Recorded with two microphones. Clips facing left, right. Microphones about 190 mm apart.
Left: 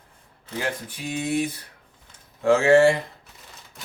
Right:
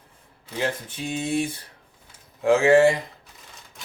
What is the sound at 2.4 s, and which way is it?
Speech, 15° right (ahead or behind).